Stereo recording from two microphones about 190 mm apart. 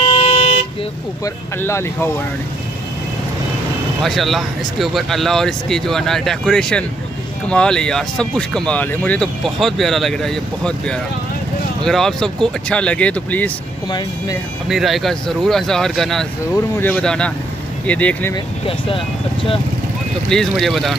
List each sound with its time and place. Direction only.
0.0 s vehicle: 30° left (ahead or behind)
1.2 s speech: 15° left (ahead or behind)
4.0 s speech: centre (ahead or behind)
13.8 s speech: 25° left (ahead or behind)
14.7 s speech: centre (ahead or behind)
18.3 s speech: 25° left (ahead or behind)
20.2 s speech: centre (ahead or behind)